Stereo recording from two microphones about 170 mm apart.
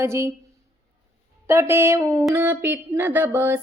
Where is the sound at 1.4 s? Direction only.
15° right (ahead or behind).